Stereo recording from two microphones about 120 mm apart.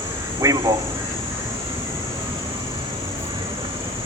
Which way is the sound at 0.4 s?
30° right (ahead or behind).